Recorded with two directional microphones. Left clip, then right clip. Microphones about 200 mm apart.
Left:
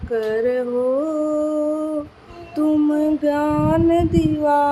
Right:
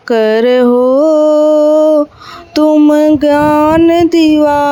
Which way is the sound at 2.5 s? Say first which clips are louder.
Right 11 dB; 40° right (ahead or behind).